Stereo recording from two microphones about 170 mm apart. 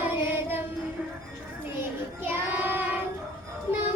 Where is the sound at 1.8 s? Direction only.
15° right (ahead or behind).